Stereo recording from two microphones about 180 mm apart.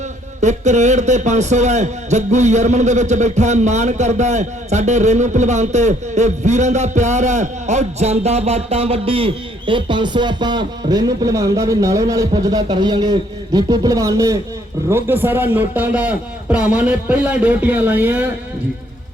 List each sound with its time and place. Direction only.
0.4 s a man's voice: 40° right (ahead or behind); by 18.3 s 10° right (ahead or behind)